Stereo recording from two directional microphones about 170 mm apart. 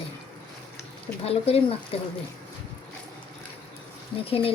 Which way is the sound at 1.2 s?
35° left (ahead or behind).